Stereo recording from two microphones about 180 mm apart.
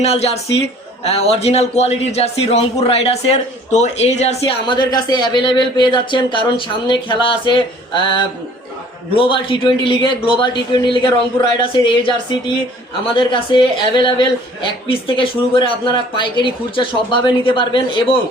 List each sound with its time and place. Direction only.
0.0 s speech: 35° left (ahead or behind)